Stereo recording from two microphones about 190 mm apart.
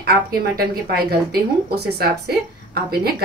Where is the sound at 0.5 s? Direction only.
55° right (ahead or behind).